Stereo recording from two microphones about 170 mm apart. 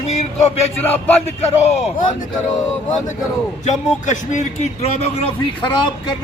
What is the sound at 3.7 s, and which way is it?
A man's voice, 45° left (ahead or behind).